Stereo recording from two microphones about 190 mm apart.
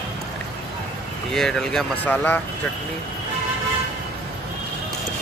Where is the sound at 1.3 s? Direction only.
Centre (ahead or behind).